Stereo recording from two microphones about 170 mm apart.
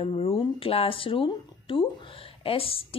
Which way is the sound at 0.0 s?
35° left (ahead or behind).